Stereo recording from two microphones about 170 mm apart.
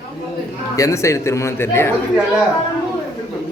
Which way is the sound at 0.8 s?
15° left (ahead or behind).